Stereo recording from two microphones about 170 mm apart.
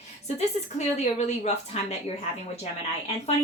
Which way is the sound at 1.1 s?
40° left (ahead or behind).